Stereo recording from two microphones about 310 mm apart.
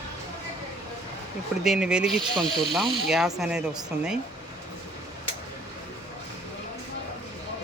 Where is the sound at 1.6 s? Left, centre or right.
Centre.